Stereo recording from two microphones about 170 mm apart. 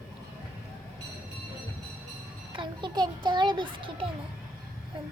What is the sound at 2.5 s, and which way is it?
Music, 30° right (ahead or behind).